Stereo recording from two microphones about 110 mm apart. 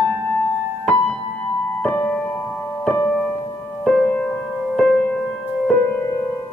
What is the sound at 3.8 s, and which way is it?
Music, 5° left (ahead or behind).